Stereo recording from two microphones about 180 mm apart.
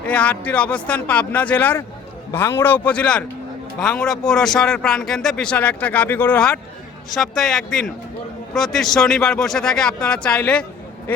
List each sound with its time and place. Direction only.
0.0 s speech: 5° left (ahead or behind)